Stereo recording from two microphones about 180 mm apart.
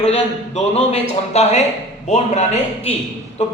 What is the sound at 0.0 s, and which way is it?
Speech, 35° left (ahead or behind).